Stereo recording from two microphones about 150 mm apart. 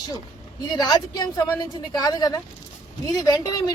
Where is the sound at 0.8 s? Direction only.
25° left (ahead or behind).